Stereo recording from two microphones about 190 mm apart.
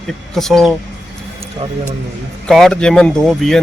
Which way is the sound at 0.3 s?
Centre (ahead or behind).